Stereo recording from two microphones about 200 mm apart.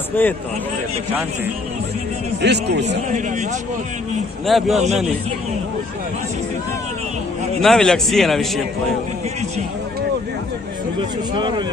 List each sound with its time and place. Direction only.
0.2 s speech: 10° left (ahead or behind)
2.4 s a man's voice: 60° right (ahead or behind)
4.5 s a man's voice: centre (ahead or behind)
4.7 s a man's voice: 35° right (ahead or behind)
7.6 s a man's voice: centre (ahead or behind)
11.3 s speech: 25° right (ahead or behind)